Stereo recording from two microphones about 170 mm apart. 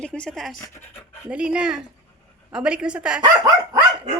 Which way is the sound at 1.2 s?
5° right (ahead or behind).